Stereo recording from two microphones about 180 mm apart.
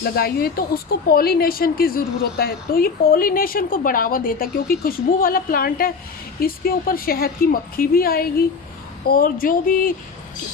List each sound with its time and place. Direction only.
0.0 s speech: 60° left (ahead or behind)